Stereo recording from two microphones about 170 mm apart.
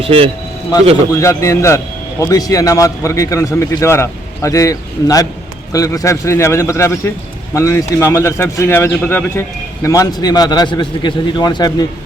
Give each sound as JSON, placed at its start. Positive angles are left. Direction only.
{"t": 0.0, "sound": "speech", "side_deg": -35}
{"t": 1.1, "sound": "a man's voice", "side_deg": 20}